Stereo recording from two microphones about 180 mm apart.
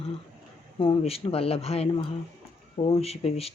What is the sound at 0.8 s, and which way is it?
Speech, 30° left (ahead or behind).